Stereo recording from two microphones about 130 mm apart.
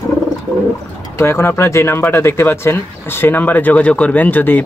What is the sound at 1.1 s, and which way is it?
Speech, 20° left (ahead or behind).